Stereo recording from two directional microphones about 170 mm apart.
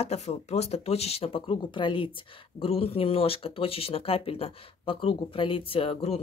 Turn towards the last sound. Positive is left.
turn(degrees=35)  # may be behind; listen again after turning